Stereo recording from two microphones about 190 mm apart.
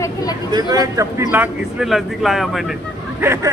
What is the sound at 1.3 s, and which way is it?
Speech, 5° right (ahead or behind).